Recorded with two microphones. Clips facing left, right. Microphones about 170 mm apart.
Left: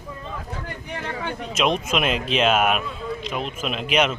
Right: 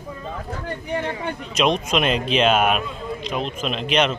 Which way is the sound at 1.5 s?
5° left (ahead or behind).